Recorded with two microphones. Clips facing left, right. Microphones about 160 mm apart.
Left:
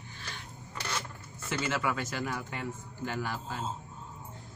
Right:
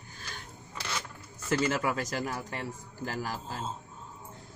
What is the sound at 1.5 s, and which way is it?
A man's voice, 40° right (ahead or behind).